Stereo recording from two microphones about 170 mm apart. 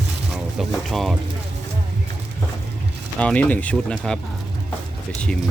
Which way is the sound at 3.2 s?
5° left (ahead or behind).